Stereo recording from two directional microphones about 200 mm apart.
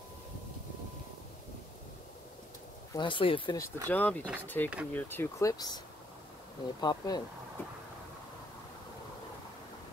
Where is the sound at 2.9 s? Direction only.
25° left (ahead or behind).